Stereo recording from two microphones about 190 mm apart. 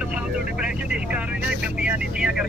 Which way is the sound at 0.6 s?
5° right (ahead or behind).